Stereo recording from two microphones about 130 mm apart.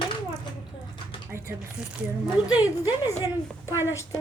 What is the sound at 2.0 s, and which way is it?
Speech, 10° right (ahead or behind).